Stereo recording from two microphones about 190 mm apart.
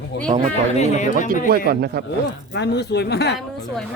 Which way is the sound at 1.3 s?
50° right (ahead or behind).